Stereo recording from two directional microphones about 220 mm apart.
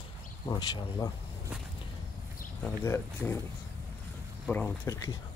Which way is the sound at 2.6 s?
10° left (ahead or behind).